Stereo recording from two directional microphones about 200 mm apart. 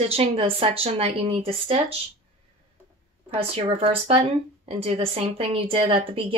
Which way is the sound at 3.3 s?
30° right (ahead or behind).